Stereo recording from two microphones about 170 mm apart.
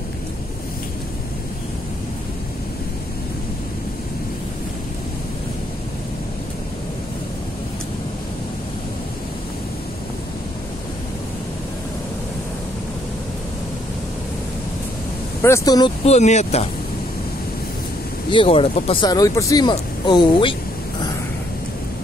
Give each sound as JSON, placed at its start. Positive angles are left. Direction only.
{"t": 15.4, "sound": "speech", "side_deg": 20}
{"t": 16.0, "sound": "speech", "side_deg": 40}
{"t": 18.3, "sound": "speech", "side_deg": 30}
{"t": 19.0, "sound": "speech", "side_deg": 20}